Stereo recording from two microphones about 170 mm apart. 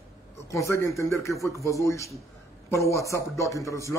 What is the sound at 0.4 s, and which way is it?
A man's voice, 15° left (ahead or behind).